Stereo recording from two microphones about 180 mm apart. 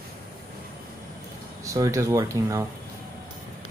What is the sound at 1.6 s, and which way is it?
Speech, 20° right (ahead or behind).